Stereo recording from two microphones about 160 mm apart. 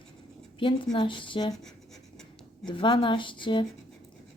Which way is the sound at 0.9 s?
30° left (ahead or behind).